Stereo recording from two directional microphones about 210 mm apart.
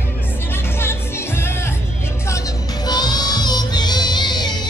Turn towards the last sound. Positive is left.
turn(degrees=20)  # may be behind; listen again after turning